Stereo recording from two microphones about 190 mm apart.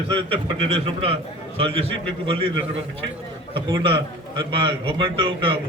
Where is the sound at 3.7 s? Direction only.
25° right (ahead or behind).